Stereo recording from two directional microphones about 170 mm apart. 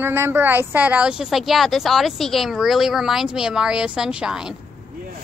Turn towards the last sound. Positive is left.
turn(degrees=-5)  # may be behind; listen again after turning